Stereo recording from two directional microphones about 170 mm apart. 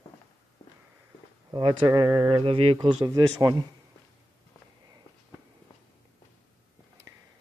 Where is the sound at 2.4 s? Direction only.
35° right (ahead or behind).